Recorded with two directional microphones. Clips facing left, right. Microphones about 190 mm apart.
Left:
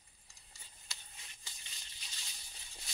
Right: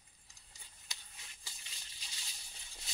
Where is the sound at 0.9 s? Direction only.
15° right (ahead or behind).